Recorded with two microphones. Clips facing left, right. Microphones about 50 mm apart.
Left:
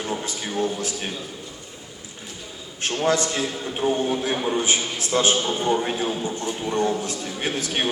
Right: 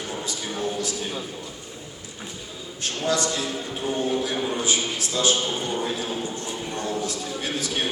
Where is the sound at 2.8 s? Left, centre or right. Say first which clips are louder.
Left 3 dB; left.